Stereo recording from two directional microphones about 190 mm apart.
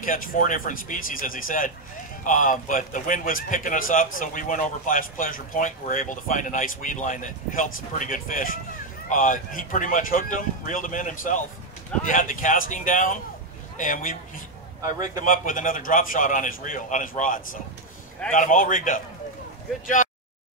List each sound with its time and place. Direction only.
0.0 s speech: 45° left (ahead or behind)
15.2 s speech: 45° left (ahead or behind)